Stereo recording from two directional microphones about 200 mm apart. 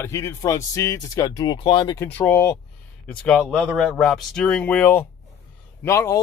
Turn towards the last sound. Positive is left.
turn(degrees=15)  # may be behind; listen again after turning